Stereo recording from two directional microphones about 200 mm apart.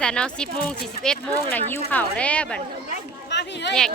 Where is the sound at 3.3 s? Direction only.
60° left (ahead or behind).